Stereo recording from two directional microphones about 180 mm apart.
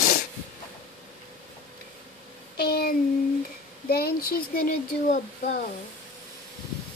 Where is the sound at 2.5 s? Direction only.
60° left (ahead or behind).